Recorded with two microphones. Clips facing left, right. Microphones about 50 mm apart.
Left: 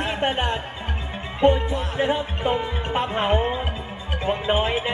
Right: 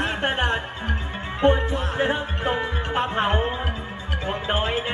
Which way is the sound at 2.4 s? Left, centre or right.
Centre.